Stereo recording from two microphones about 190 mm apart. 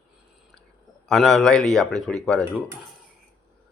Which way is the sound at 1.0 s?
Centre (ahead or behind).